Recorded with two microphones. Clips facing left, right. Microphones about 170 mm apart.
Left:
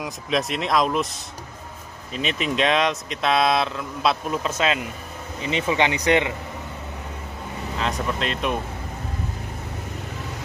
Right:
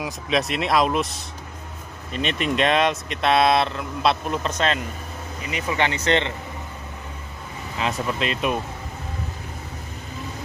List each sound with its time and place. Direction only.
0.0 s speech: centre (ahead or behind)
5.4 s speech: 25° left (ahead or behind)
7.8 s speech: 5° right (ahead or behind)